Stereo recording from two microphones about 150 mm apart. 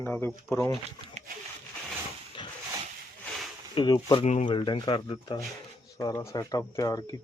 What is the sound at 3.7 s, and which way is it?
Speech, 30° left (ahead or behind).